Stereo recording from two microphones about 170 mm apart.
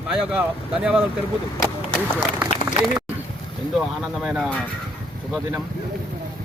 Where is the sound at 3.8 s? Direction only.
5° right (ahead or behind).